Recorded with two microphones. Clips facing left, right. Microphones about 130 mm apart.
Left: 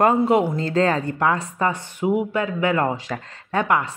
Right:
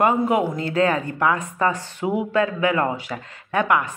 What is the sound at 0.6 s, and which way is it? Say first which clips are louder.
Speech: left 1 dB; 35° left (ahead or behind).